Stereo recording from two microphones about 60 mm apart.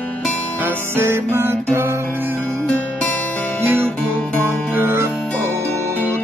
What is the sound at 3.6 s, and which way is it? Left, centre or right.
Guitar, right.